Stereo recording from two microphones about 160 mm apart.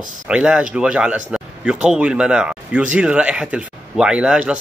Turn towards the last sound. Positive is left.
turn(degrees=-5)  # may be behind; listen again after turning